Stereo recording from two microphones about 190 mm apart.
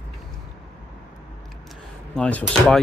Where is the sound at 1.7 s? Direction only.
5° left (ahead or behind).